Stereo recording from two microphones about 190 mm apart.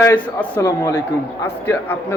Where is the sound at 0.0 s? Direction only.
10° left (ahead or behind).